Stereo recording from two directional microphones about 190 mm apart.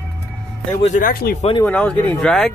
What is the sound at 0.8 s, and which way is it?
Speech, 40° left (ahead or behind).